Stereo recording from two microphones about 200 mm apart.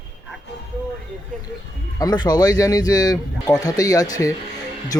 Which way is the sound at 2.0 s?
20° left (ahead or behind).